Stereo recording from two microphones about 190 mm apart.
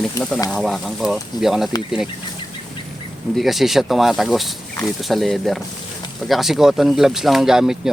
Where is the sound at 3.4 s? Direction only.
Centre (ahead or behind).